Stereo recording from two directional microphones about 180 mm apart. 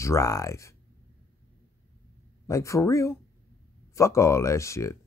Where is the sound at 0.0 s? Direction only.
15° left (ahead or behind).